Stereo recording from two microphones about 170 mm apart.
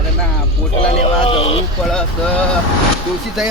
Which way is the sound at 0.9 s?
35° left (ahead or behind).